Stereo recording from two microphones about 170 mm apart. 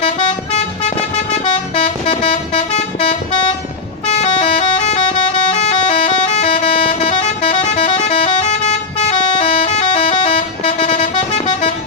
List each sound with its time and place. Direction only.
0.0 s vehicle: 40° left (ahead or behind)
4.0 s music: 40° left (ahead or behind)